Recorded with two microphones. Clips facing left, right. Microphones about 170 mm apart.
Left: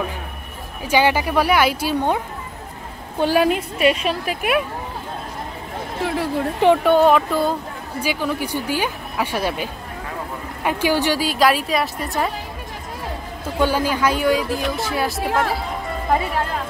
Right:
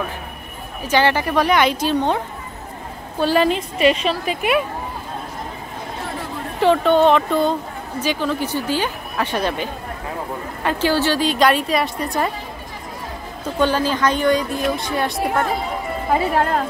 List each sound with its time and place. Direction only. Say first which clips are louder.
0.8 s speech: even; 10° left (ahead or behind)
3.2 s speech: even; 10° left (ahead or behind)
6.0 s speech: left 10 dB; 90° left
6.6 s a woman's voice: even; 10° left (ahead or behind)
13.6 s a woman's voice: right 1 dB; 10° left (ahead or behind)